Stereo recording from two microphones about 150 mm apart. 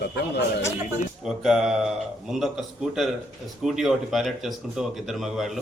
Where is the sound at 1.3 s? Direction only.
5° right (ahead or behind).